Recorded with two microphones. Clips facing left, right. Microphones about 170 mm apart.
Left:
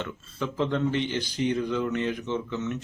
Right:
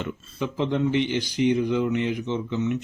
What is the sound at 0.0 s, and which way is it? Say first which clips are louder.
Speech: right 3 dB; 15° right (ahead or behind).